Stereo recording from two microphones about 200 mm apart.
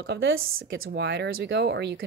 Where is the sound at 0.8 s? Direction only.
60° right (ahead or behind).